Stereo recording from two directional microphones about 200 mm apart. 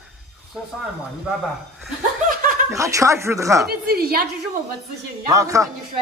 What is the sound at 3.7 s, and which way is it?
Speech, 50° right (ahead or behind).